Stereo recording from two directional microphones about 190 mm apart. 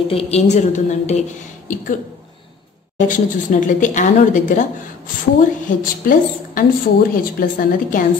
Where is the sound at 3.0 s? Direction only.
45° left (ahead or behind).